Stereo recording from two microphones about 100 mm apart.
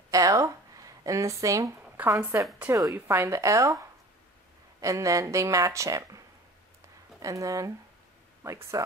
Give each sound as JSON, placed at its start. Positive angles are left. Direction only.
{"t": 0.1, "sound": "a woman's voice", "side_deg": -35}
{"t": 4.8, "sound": "a woman's voice", "side_deg": -30}